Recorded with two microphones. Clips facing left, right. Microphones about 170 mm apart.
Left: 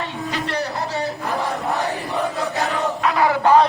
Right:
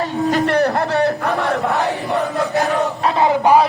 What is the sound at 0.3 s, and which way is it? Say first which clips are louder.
A man's voice: right 10 dB; 50° right (ahead or behind).